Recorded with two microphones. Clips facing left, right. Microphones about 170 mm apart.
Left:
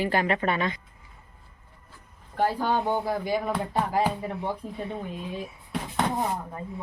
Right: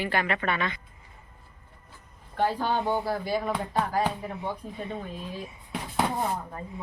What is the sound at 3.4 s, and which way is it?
Speech, 5° left (ahead or behind).